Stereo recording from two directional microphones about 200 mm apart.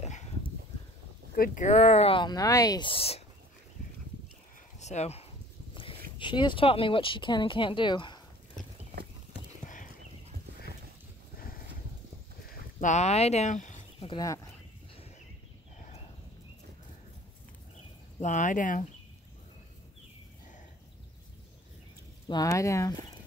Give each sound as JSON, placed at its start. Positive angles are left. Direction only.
{"t": 1.3, "sound": "speech", "side_deg": 45}
{"t": 4.7, "sound": "speech", "side_deg": 35}
{"t": 6.1, "sound": "speech", "side_deg": 25}
{"t": 12.4, "sound": "a sound", "side_deg": 35}
{"t": 14.0, "sound": "speech", "side_deg": 20}
{"t": 18.2, "sound": "speech", "side_deg": 40}
{"t": 22.3, "sound": "speech", "side_deg": 15}